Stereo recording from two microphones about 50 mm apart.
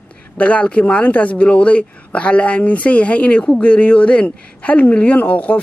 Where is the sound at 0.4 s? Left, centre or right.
Left.